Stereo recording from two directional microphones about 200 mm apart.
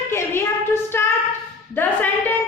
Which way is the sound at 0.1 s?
10° left (ahead or behind).